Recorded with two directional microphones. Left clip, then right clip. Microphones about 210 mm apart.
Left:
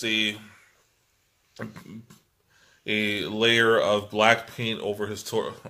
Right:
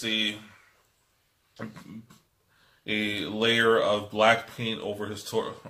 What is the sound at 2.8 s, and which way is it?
Speech, 50° left (ahead or behind).